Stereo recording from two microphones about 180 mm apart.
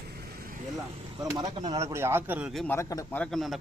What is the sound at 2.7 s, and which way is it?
Speech, 15° left (ahead or behind).